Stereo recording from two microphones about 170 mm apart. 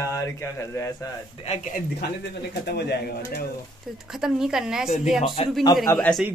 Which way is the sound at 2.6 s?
70° left (ahead or behind).